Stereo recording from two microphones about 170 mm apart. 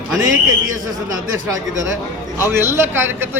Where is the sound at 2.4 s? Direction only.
15° right (ahead or behind).